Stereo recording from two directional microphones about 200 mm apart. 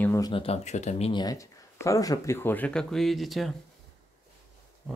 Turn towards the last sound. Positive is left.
turn(degrees=0)  # may be behind; listen again after turning